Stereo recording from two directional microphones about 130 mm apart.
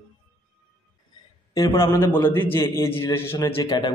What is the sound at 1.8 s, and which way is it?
A man's voice, 20° left (ahead or behind).